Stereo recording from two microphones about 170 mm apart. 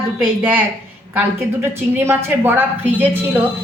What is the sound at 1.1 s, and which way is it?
Speech, 10° right (ahead or behind).